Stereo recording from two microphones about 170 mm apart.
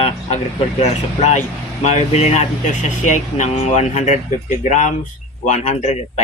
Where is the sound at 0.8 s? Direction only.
45° left (ahead or behind).